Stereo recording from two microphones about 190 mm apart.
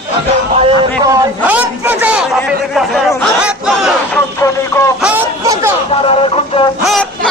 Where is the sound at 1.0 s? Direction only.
15° right (ahead or behind).